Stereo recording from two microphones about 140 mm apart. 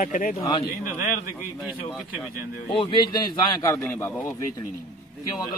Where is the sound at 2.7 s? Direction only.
35° left (ahead or behind); by 4.3 s 20° left (ahead or behind).